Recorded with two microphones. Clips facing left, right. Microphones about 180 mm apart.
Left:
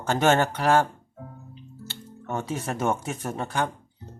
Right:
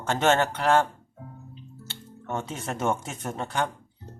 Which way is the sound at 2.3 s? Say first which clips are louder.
Left 2 dB; 5° left (ahead or behind).